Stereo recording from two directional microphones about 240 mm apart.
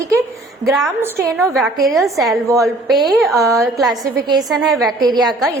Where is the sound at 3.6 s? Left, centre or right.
Centre.